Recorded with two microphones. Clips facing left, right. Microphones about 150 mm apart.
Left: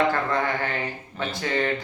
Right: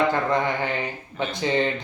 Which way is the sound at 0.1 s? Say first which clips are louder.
Right 2 dB; 15° right (ahead or behind).